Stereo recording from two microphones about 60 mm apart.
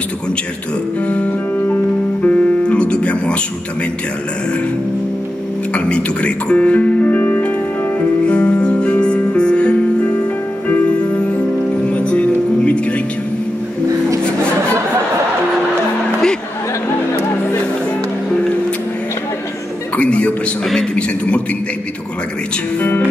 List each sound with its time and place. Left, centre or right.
1.0 s music: left
5.7 s speech: centre
8.3 s music: centre
11.8 s music: centre
20.0 s a sound: left
22.8 s music: left